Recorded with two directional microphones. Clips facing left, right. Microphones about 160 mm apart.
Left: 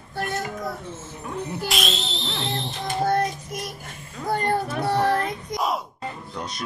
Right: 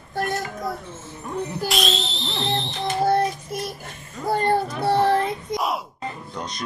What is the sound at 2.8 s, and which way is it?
Child singing, 30° right (ahead or behind).